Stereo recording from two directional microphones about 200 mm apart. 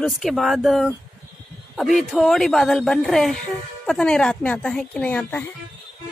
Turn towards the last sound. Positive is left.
turn(degrees=10)  # may be behind; listen again after turning